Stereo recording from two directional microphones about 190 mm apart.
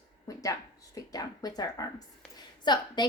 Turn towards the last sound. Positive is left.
turn(degrees=25)  # may be behind; listen again after turning